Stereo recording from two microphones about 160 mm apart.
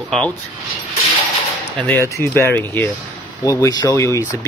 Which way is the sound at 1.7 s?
15° left (ahead or behind).